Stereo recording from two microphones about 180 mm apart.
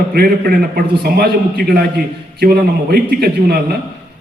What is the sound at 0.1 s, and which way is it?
A man's voice, 55° right (ahead or behind).